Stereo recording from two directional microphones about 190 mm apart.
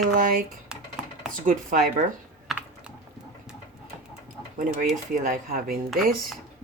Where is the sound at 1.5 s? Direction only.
45° right (ahead or behind).